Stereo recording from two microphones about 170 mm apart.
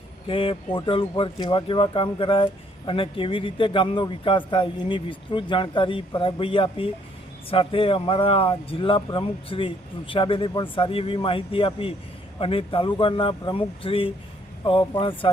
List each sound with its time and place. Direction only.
0.3 s speech: 30° left (ahead or behind)